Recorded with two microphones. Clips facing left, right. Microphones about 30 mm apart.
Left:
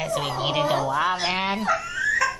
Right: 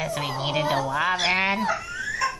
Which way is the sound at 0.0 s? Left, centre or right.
Centre.